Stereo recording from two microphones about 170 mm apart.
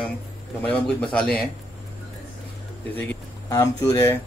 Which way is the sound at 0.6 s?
5° left (ahead or behind).